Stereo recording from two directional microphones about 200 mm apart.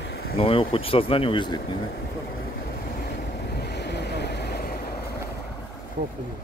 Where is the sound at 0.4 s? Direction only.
25° left (ahead or behind).